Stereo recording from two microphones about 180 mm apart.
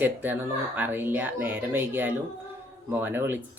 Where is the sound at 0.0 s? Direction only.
10° right (ahead or behind).